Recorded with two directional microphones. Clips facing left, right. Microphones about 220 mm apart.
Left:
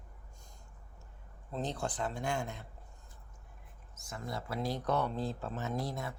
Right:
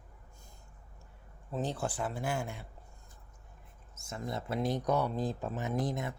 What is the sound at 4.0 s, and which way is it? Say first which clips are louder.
Speech: right 3 dB; 25° right (ahead or behind).